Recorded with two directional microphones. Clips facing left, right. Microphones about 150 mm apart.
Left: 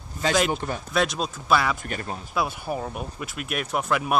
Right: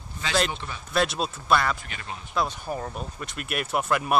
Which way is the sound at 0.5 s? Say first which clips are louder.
Left 8 dB; 45° left (ahead or behind).